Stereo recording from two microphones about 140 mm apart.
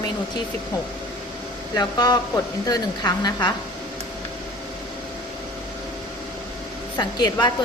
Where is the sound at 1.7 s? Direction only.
30° left (ahead or behind).